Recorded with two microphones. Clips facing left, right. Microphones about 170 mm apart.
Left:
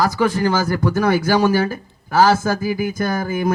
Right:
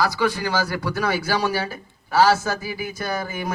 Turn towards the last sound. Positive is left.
turn(degrees=50)  # may be behind; listen again after turning